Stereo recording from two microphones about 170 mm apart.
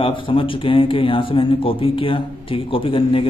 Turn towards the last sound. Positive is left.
turn(degrees=30)  # may be behind; listen again after turning